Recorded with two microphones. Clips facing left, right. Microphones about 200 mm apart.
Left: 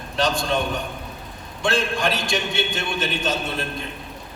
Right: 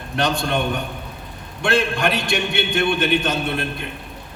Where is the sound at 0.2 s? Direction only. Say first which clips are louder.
Right 1 dB; 60° right (ahead or behind).